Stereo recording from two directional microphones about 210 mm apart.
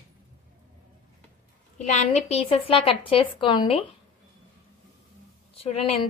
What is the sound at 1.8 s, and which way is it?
A woman's voice, 30° left (ahead or behind).